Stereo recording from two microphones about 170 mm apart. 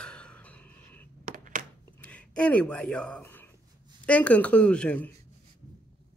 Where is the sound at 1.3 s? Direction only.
50° right (ahead or behind).